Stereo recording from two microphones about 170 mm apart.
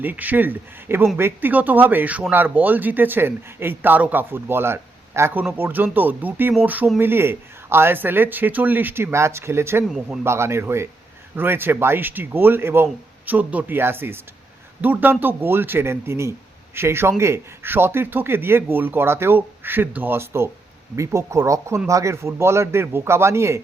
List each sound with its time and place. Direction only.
0.0 s a man's voice: 10° right (ahead or behind)